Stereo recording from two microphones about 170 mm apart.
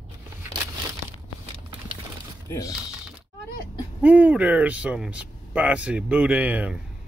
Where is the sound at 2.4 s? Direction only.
15° left (ahead or behind).